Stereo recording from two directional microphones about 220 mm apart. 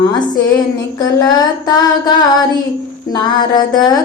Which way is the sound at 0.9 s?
20° left (ahead or behind).